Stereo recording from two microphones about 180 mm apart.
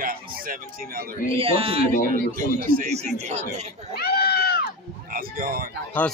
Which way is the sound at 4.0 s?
60° left (ahead or behind).